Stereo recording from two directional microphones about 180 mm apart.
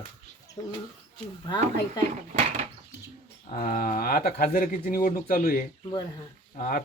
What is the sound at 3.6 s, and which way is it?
Speech, 50° left (ahead or behind).